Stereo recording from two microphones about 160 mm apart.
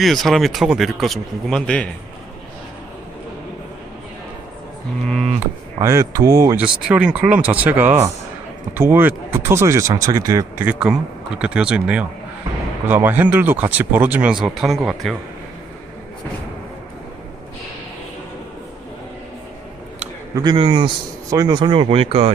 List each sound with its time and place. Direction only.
0.0 s speech: centre (ahead or behind)
5.0 s speech: centre (ahead or behind)
5.8 s speech: 20° right (ahead or behind)
6.6 s speech: 5° right (ahead or behind)
10.7 s speech: 5° right (ahead or behind)
20.3 s speech: 25° right (ahead or behind)